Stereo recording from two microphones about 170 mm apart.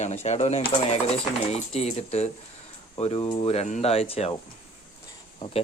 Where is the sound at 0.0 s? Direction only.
40° left (ahead or behind).